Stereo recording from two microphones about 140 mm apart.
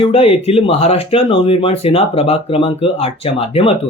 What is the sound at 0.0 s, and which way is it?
Speech, 40° left (ahead or behind).